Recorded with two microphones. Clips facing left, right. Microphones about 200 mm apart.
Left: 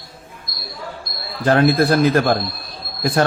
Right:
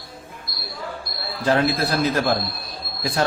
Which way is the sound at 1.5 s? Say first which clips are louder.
Left 6 dB; 55° left (ahead or behind).